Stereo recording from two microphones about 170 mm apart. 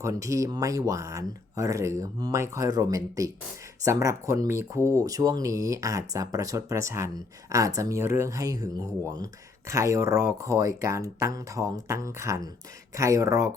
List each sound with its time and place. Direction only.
0.0 s speech: 20° right (ahead or behind)